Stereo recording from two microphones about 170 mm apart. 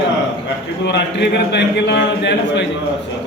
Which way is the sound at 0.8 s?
85° left.